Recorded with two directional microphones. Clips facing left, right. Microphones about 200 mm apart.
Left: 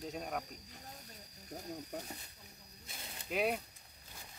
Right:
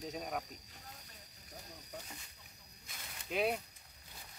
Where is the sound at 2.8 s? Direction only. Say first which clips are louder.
Left 3 dB; 30° left (ahead or behind).